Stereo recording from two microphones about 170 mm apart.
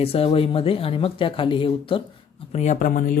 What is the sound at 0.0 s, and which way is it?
Speech, 35° left (ahead or behind).